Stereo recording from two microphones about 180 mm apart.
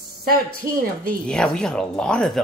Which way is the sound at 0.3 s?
55° right (ahead or behind).